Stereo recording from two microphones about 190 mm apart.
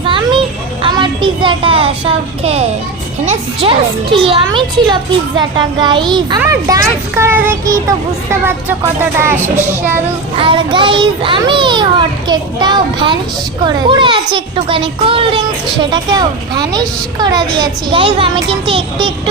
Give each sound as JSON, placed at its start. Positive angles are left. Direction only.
{"t": 0.0, "sound": "children playing", "side_deg": -25}
{"t": 0.8, "sound": "a child's voice", "side_deg": -25}
{"t": 10.3, "sound": "a child's voice", "side_deg": -25}